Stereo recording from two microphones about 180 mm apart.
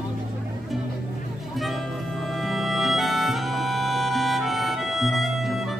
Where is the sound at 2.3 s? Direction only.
Centre (ahead or behind).